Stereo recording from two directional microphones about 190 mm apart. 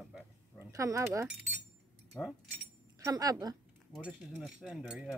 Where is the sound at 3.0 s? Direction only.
20° right (ahead or behind).